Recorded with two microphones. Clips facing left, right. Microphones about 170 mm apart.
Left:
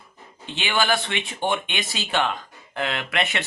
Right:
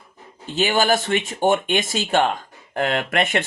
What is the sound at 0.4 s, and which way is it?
Speech, 40° right (ahead or behind).